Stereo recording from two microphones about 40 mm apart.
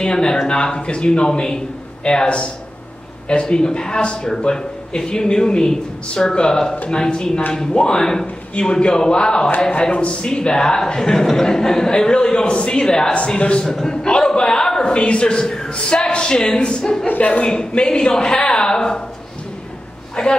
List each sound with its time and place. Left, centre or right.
0.0 s a man's voice: centre
13.7 s a man's voice: centre
17.1 s a man's voice: left
17.5 s a man's voice: left
20.2 s speech: centre